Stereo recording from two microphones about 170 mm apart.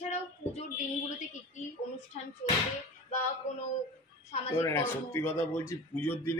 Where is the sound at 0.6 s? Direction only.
45° left (ahead or behind).